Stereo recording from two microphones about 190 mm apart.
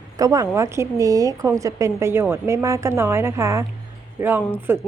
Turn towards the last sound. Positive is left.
turn(degrees=-10)  # may be behind; listen again after turning